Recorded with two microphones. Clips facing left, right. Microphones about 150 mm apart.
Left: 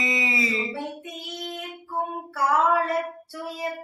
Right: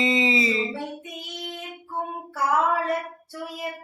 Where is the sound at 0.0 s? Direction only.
25° right (ahead or behind).